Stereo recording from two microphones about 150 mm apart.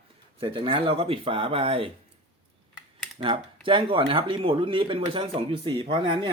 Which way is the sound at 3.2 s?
35° right (ahead or behind).